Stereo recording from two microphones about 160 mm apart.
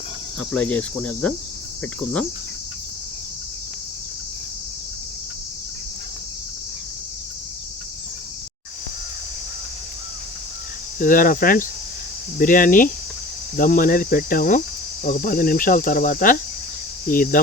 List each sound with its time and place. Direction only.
0.3 s speech: 10° left (ahead or behind)
11.0 s cricket: 60° left (ahead or behind)